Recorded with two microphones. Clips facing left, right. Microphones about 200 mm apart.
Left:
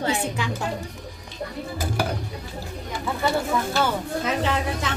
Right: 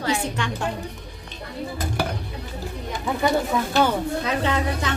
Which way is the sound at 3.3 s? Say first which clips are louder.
Right 1 dB; 15° right (ahead or behind).